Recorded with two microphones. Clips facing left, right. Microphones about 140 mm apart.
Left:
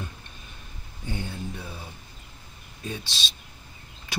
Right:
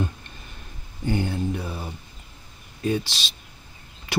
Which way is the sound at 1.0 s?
75° right (ahead or behind).